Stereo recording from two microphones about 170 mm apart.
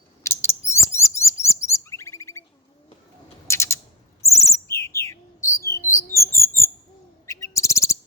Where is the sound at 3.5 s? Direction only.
15° left (ahead or behind).